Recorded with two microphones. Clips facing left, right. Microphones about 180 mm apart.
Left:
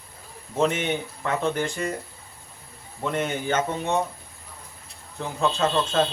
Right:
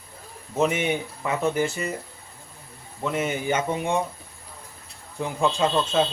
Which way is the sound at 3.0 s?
5° right (ahead or behind).